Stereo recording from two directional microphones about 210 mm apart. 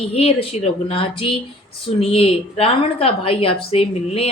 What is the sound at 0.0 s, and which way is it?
A woman's voice, 30° left (ahead or behind).